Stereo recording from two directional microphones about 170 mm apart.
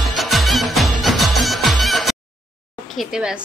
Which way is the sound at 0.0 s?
Centre (ahead or behind).